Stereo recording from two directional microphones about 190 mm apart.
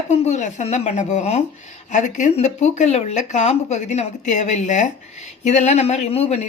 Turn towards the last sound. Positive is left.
turn(degrees=35)  # may be behind; listen again after turning